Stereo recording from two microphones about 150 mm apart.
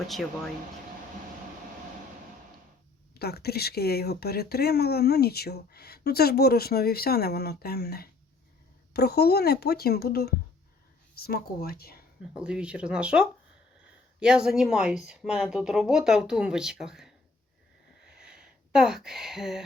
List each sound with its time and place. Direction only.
0.1 s speech: centre (ahead or behind)
3.2 s speech: 90° left
12.4 s speech: 5° right (ahead or behind)
18.2 s a sound: 5° right (ahead or behind)